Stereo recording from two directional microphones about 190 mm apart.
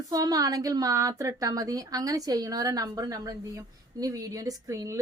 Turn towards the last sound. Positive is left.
turn(degrees=-15)  # may be behind; listen again after turning